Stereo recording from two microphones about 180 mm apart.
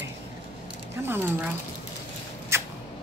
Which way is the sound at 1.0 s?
10° right (ahead or behind).